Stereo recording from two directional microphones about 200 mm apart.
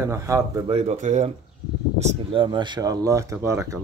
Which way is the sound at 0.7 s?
30° right (ahead or behind).